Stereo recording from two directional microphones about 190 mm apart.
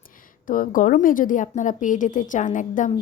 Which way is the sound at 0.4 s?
45° left (ahead or behind).